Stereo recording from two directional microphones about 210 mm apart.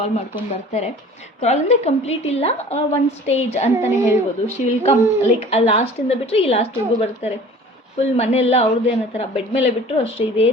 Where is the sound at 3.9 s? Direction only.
15° right (ahead or behind).